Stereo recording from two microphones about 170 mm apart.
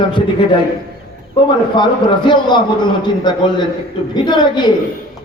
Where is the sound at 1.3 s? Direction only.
25° left (ahead or behind).